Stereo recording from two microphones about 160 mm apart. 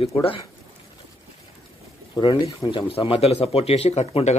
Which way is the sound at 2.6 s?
35° left (ahead or behind).